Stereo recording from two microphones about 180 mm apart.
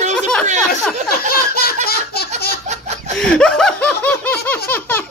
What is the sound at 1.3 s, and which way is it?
Laughter, 55° left (ahead or behind).